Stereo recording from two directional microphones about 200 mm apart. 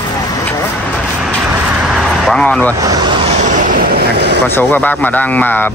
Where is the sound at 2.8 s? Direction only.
20° right (ahead or behind).